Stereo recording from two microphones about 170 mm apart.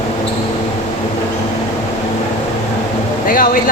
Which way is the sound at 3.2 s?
55° left (ahead or behind).